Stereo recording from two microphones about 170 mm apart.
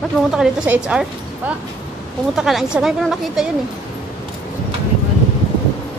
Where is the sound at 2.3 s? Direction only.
Centre (ahead or behind).